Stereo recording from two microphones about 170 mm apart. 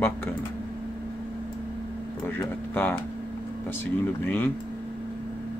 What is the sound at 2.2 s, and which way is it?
Speech, 10° left (ahead or behind).